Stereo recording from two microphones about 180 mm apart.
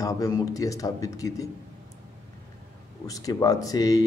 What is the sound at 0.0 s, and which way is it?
A man's voice, 20° left (ahead or behind).